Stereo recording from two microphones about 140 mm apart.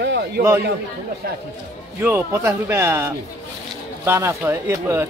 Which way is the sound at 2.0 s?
15° right (ahead or behind).